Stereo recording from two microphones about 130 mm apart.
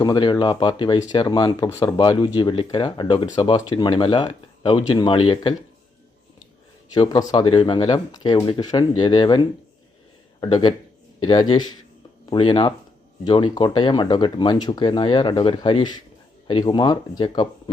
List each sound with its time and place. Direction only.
0.0 s speech: 35° left (ahead or behind)
6.9 s speech: 30° left (ahead or behind)
10.4 s speech: 35° left (ahead or behind)